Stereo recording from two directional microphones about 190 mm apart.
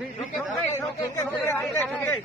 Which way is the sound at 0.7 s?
15° left (ahead or behind).